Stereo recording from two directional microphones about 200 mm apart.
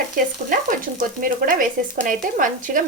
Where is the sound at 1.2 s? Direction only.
45° right (ahead or behind).